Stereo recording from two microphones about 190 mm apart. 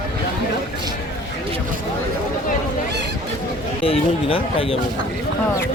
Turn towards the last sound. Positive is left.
turn(degrees=30)  # may be behind; listen again after turning